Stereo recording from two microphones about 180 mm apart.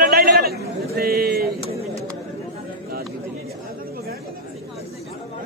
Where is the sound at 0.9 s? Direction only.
60° right (ahead or behind).